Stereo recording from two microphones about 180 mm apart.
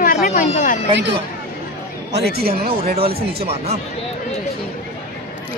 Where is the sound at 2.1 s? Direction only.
60° right (ahead or behind).